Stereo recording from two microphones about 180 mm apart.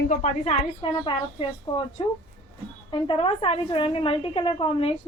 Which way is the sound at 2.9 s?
30° left (ahead or behind).